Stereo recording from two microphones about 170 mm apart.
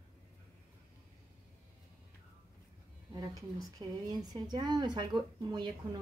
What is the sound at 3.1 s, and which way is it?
A woman's voice, 20° right (ahead or behind).